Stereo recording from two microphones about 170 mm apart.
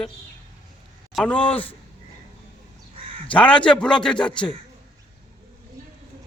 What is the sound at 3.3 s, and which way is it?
Speech, 5° left (ahead or behind).